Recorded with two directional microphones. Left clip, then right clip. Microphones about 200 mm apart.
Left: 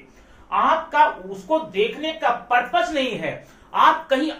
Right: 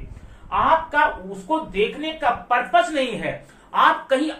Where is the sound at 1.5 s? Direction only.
10° right (ahead or behind).